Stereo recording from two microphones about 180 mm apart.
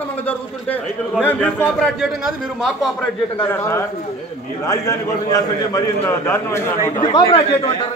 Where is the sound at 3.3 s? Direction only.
15° left (ahead or behind).